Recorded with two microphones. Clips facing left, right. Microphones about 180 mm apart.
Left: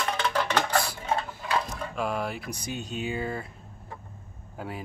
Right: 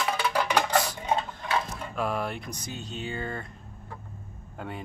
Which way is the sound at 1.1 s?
20° right (ahead or behind).